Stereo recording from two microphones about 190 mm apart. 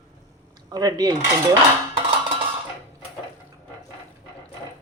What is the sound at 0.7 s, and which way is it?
Cutlery, 20° right (ahead or behind).